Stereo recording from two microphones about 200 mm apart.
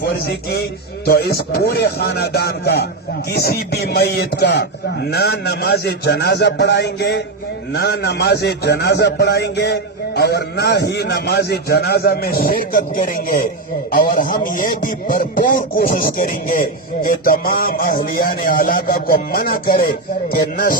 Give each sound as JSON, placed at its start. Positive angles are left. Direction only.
{"t": 0.0, "sound": "a man's voice", "side_deg": 50}